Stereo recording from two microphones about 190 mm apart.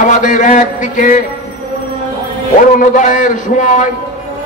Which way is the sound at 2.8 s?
40° left (ahead or behind).